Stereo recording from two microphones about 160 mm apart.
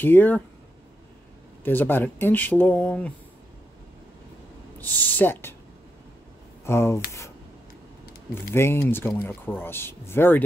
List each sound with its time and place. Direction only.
0.0 s speech: 10° left (ahead or behind)
1.6 s speech: 10° left (ahead or behind)
4.7 s speech: 10° left (ahead or behind)
6.6 s speech: 15° left (ahead or behind)
8.5 s speech: 15° left (ahead or behind)